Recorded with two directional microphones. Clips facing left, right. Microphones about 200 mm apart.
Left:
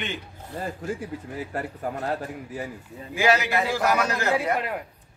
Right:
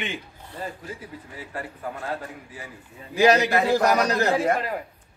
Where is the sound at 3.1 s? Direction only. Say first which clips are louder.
Right 4 dB; 40° right (ahead or behind).